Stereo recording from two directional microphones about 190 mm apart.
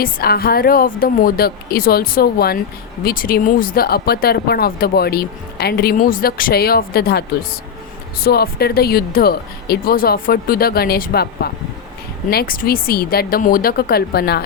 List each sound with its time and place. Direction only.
0.0 s speech: 50° left (ahead or behind)